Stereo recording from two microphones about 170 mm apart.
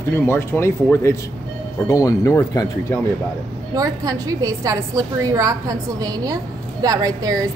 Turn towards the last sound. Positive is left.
turn(degrees=-20)  # may be behind; listen again after turning